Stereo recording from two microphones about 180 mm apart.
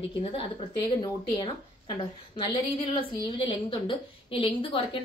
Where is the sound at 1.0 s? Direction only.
25° left (ahead or behind).